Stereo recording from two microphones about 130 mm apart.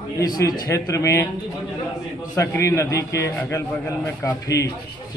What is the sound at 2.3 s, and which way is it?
A man's voice, 25° left (ahead or behind).